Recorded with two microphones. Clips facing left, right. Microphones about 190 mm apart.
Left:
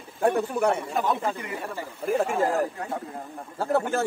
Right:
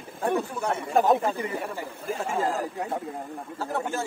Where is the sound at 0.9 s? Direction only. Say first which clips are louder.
Right 5 dB; 45° right (ahead or behind).